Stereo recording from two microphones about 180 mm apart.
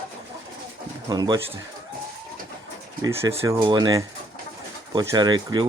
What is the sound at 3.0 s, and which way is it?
Speech, 15° right (ahead or behind).